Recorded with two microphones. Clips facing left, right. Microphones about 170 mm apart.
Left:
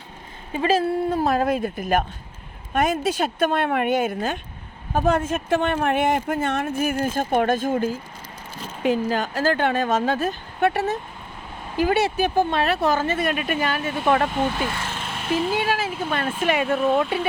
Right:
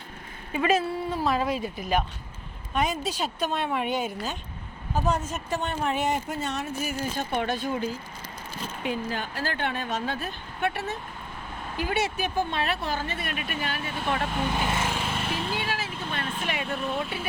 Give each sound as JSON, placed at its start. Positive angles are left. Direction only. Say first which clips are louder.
{"t": 0.5, "sound": "speech", "louder": "left 3 dB", "side_deg": 30}
{"t": 0.9, "sound": "speech", "louder": "left 6 dB", "side_deg": 50}
{"t": 8.8, "sound": "speech", "louder": "left 9 dB", "side_deg": 90}
{"t": 10.2, "sound": "speech", "louder": "left 9 dB", "side_deg": 40}
{"t": 11.9, "sound": "speech", "louder": "left 7 dB", "side_deg": 35}
{"t": 12.5, "sound": "speech", "louder": "left 7 dB", "side_deg": 45}
{"t": 13.1, "sound": "speech", "louder": "left 9 dB", "side_deg": 90}
{"t": 14.7, "sound": "speech", "louder": "right 2 dB", "side_deg": -20}
{"t": 14.9, "sound": "a sound", "louder": "left 5 dB", "side_deg": 0}
{"t": 15.6, "sound": "speech", "louder": "left 8 dB", "side_deg": 80}